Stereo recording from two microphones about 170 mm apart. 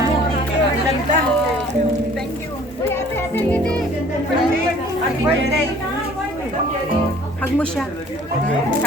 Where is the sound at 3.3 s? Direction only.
10° left (ahead or behind).